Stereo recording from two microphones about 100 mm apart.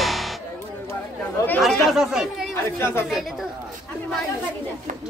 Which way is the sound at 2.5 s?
25° left (ahead or behind).